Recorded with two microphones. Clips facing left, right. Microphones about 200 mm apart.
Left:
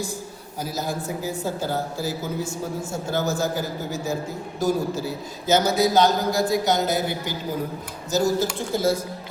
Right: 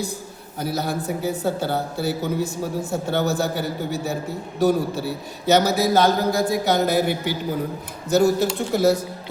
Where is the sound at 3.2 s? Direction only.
65° right (ahead or behind).